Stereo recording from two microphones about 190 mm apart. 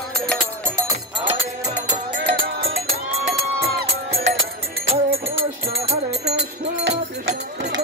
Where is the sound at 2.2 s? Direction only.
90° right.